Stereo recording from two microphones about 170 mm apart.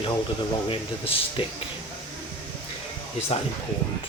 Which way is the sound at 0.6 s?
35° left (ahead or behind).